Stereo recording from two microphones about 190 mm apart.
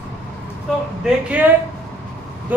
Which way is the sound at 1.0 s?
10° right (ahead or behind).